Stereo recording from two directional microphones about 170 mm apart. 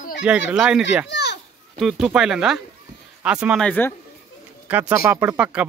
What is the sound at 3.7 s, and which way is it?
Speech, 10° left (ahead or behind).